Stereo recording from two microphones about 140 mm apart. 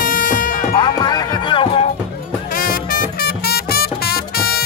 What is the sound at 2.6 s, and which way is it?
Music, 90° left.